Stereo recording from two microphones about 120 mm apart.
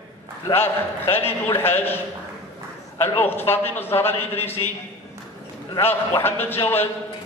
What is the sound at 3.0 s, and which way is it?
A man's voice, 20° left (ahead or behind).